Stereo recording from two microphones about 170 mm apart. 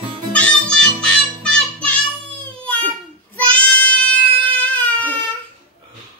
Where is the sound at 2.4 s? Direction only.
10° left (ahead or behind).